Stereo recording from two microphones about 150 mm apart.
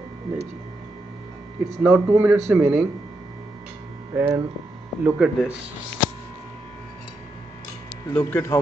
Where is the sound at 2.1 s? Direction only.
10° right (ahead or behind).